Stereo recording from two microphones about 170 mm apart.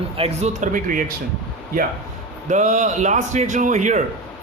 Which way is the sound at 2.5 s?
45° right (ahead or behind).